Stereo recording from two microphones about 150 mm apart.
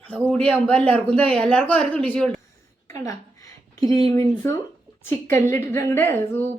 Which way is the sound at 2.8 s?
20° left (ahead or behind).